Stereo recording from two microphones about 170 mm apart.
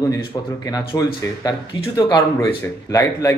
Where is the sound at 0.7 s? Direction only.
20° left (ahead or behind).